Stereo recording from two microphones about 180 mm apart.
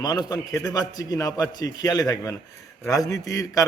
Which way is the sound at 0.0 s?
20° left (ahead or behind).